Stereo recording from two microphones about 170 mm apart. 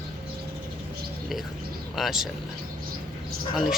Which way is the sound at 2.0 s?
Centre (ahead or behind).